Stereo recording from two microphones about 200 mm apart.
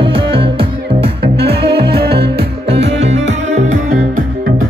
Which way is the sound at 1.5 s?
50° right (ahead or behind).